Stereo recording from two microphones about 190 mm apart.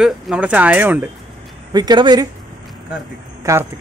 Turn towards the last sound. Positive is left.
turn(degrees=-15)  # may be behind; listen again after turning